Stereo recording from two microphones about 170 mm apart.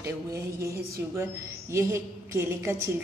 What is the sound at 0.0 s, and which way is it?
Speech, 15° right (ahead or behind).